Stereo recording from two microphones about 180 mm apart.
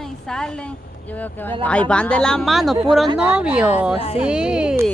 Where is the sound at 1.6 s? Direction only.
5° left (ahead or behind).